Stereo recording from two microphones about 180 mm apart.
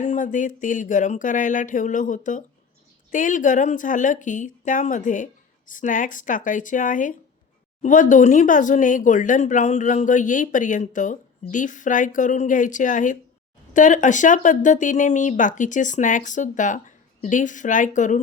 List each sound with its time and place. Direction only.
0.0 s speech: 45° left (ahead or behind)